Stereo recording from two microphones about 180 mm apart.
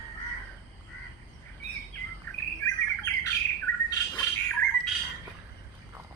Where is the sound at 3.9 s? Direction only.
20° left (ahead or behind).